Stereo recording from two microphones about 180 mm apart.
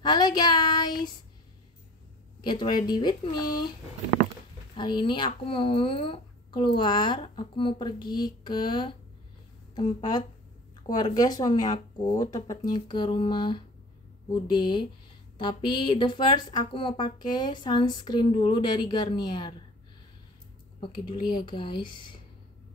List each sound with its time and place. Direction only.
0.0 s child singing: 25° left (ahead or behind)
2.4 s speech: 25° left (ahead or behind)
4.7 s speech: 25° left (ahead or behind)
20.8 s speech: 25° left (ahead or behind)